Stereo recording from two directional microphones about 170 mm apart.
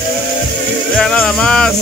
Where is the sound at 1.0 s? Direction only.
5° left (ahead or behind).